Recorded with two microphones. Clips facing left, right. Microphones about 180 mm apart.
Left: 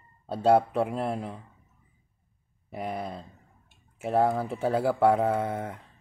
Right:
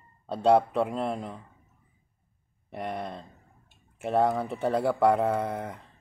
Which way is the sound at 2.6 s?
5° left (ahead or behind).